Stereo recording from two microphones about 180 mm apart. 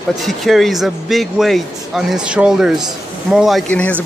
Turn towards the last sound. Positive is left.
turn(degrees=5)  # may be behind; listen again after turning